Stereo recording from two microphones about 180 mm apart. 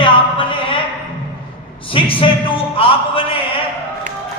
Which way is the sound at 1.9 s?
30° left (ahead or behind).